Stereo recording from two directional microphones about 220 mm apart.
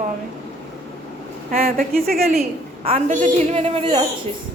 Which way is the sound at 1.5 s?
40° right (ahead or behind).